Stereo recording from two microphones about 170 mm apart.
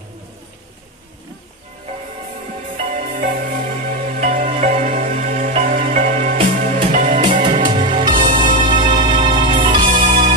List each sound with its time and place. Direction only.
2.8 s music: 50° right (ahead or behind)
7.2 s music: 30° right (ahead or behind)
8.8 s music: 50° right (ahead or behind)
9.2 s music: 30° right (ahead or behind)
9.8 s music: 50° right (ahead or behind)